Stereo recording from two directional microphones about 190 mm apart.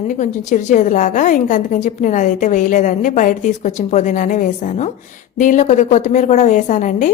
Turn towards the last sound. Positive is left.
turn(degrees=40)  # may be behind; listen again after turning